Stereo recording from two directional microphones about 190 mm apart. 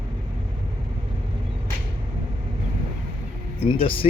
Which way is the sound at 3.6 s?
30° left (ahead or behind).